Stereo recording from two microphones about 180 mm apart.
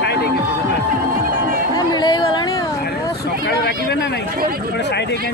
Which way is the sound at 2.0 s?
25° left (ahead or behind).